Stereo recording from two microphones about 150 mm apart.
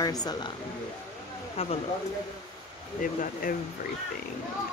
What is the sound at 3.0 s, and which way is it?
Speech, 65° left (ahead or behind).